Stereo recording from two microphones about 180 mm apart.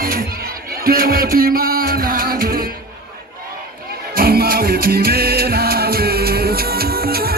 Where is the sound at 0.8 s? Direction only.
55° right (ahead or behind).